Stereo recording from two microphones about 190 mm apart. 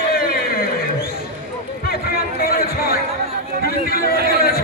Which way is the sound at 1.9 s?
55° left (ahead or behind).